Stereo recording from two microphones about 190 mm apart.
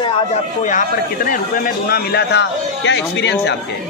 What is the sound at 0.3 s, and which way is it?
Speech, 40° left (ahead or behind).